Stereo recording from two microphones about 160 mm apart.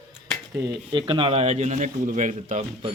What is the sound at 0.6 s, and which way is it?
A man's voice, 20° right (ahead or behind).